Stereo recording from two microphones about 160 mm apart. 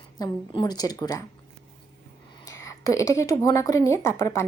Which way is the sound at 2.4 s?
20° left (ahead or behind).